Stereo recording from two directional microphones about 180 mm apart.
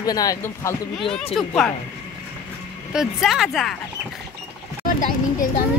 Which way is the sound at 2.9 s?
5° right (ahead or behind).